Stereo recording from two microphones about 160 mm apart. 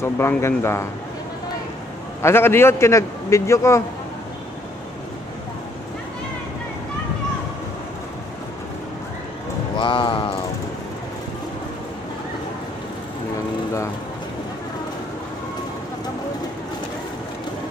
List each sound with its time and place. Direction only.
0.0 s a man's voice: 15° left (ahead or behind)
2.2 s a man's voice: 15° left (ahead or behind)
9.8 s speech: 30° left (ahead or behind)